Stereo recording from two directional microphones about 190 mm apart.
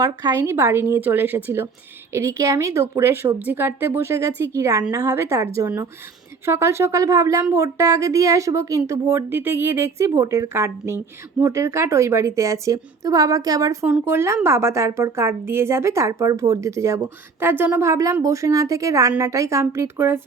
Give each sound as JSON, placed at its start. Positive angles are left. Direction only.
{"t": 0.0, "sound": "a woman's voice", "side_deg": -20}